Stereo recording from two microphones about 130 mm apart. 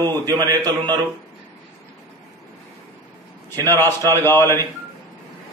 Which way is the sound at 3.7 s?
20° left (ahead or behind).